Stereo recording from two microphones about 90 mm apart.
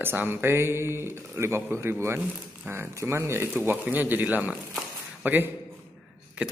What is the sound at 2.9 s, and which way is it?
Speech, 35° right (ahead or behind).